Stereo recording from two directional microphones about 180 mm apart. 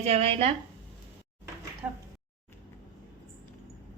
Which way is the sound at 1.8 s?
5° right (ahead or behind).